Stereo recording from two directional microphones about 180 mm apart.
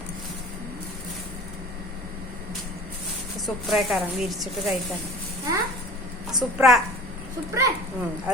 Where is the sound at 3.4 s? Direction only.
Centre (ahead or behind).